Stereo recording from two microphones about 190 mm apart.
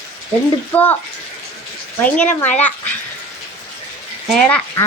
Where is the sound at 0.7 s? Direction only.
10° left (ahead or behind).